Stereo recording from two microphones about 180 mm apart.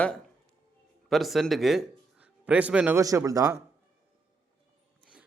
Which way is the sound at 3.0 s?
20° right (ahead or behind).